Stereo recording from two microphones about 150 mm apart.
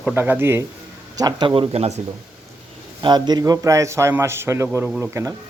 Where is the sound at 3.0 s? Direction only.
30° right (ahead or behind).